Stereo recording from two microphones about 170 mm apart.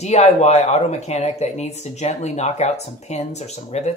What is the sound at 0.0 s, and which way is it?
Speech, 40° left (ahead or behind).